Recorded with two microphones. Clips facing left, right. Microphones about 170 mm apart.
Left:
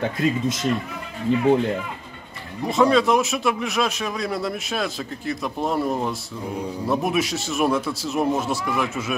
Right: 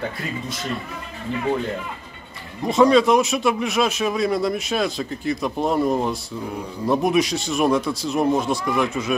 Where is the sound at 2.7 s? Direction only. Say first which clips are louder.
Right 3 dB; centre (ahead or behind).